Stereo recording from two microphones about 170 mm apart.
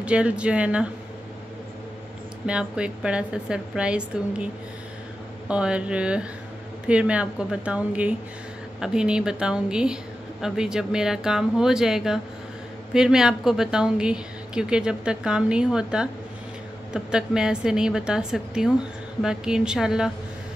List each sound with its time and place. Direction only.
0.0 s a woman's voice: 5° right (ahead or behind)
2.4 s a woman's voice: 5° right (ahead or behind)
5.5 s a woman's voice: 5° right (ahead or behind)